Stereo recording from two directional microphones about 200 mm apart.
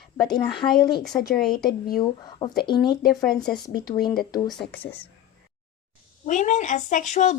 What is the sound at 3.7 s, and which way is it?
Speech, 50° left (ahead or behind).